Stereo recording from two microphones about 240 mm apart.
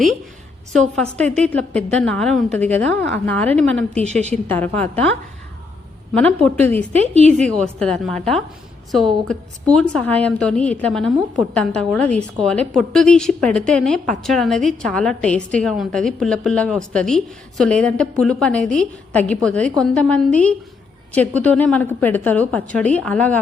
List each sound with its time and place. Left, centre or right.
0.9 s a woman's voice: centre
6.1 s a woman's voice: centre
6.9 s a woman's voice: right
7.4 s a woman's voice: centre